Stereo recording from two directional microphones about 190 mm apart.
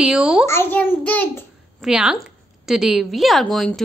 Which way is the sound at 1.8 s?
5° right (ahead or behind).